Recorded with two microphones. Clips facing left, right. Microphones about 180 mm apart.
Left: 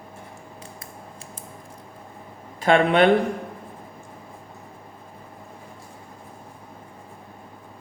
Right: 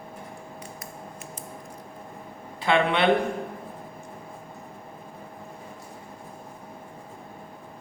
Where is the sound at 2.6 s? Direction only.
45° left (ahead or behind).